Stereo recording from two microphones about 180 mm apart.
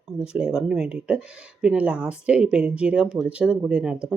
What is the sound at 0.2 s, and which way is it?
Speech, 5° right (ahead or behind).